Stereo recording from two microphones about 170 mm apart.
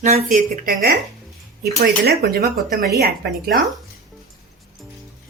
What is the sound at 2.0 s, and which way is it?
Speech, 65° right (ahead or behind).